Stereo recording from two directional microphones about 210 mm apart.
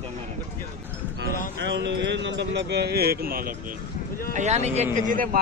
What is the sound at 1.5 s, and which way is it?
Speech, 55° right (ahead or behind).